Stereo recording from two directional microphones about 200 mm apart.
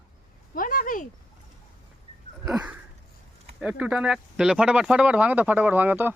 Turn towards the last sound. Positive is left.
turn(degrees=-10)  # may be behind; listen again after turning